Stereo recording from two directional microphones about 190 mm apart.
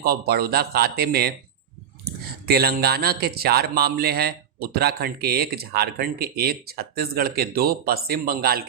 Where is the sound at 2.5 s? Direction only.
55° right (ahead or behind).